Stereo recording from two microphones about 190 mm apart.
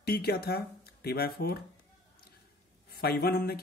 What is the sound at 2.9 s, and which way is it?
Speech, 55° left (ahead or behind).